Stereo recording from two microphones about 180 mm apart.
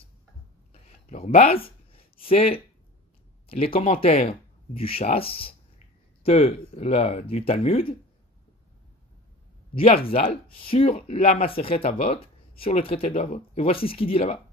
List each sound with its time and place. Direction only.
0.7 s a sound: 35° left (ahead or behind)
3.4 s speech: 30° left (ahead or behind)
9.8 s speech: 30° left (ahead or behind)